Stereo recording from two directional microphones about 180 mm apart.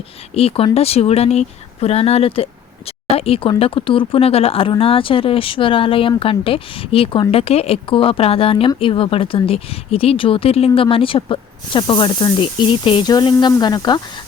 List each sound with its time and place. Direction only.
0.3 s speech: 35° left (ahead or behind)